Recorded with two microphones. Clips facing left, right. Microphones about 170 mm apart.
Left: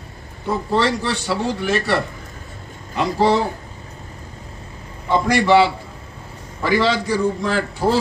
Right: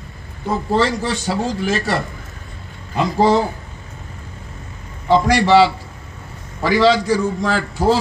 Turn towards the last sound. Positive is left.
turn(degrees=55)  # may be behind; listen again after turning